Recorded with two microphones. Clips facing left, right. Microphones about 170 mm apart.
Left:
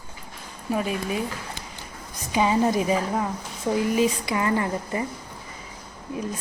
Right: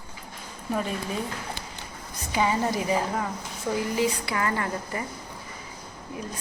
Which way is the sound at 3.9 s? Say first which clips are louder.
Left 3 dB; 20° left (ahead or behind).